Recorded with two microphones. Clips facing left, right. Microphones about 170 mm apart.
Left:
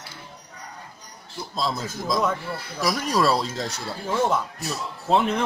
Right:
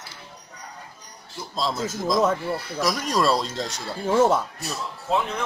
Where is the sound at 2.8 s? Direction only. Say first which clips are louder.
Left 1 dB; centre (ahead or behind).